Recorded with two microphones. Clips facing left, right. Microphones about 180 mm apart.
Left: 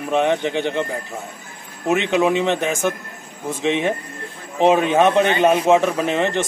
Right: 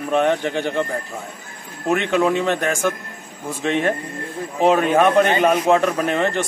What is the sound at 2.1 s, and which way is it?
A man's voice, 15° left (ahead or behind).